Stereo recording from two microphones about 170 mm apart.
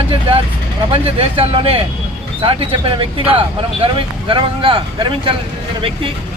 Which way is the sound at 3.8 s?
30° right (ahead or behind).